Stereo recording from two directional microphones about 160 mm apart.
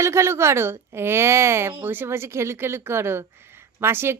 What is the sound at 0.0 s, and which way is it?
A woman's voice, 15° right (ahead or behind).